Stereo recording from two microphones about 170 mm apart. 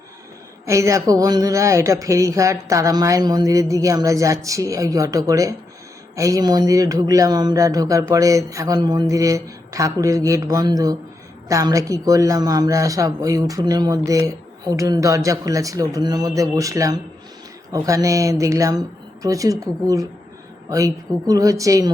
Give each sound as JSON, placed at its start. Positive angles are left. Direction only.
{"t": 0.6, "sound": "speech", "side_deg": -15}